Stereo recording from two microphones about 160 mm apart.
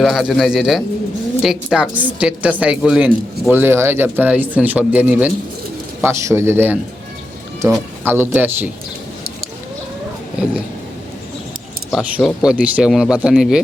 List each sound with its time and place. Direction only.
0.0 s a woman's voice: centre (ahead or behind)
11.9 s speech: centre (ahead or behind)